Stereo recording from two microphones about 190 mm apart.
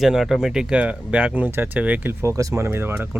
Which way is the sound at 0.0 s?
Centre (ahead or behind).